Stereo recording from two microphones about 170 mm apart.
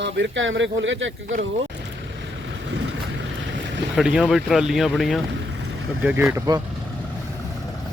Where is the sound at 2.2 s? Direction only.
90° right.